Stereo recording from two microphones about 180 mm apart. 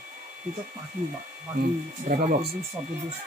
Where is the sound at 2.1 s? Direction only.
45° right (ahead or behind).